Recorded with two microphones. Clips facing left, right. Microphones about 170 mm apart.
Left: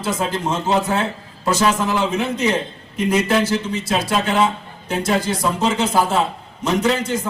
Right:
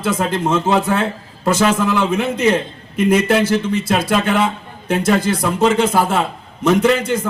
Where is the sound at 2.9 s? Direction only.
55° right (ahead or behind).